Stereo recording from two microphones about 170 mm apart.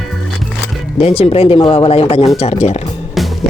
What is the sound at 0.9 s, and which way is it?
Speech, 35° left (ahead or behind).